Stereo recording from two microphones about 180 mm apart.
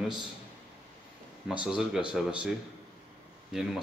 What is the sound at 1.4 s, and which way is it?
Speech, 5° right (ahead or behind).